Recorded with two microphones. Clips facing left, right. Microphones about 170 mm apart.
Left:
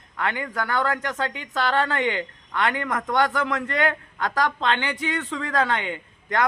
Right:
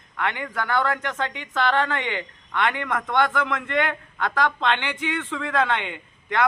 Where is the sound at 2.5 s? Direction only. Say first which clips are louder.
Even; 35° left (ahead or behind).